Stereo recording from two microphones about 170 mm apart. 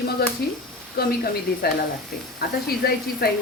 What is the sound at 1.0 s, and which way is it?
Speech, 65° left (ahead or behind).